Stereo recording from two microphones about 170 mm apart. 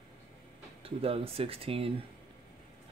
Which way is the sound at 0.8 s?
35° right (ahead or behind).